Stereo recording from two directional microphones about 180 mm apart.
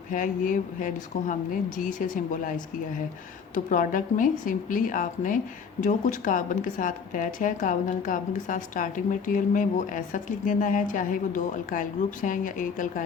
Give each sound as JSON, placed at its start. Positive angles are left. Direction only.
{"t": 0.1, "sound": "speech", "side_deg": 45}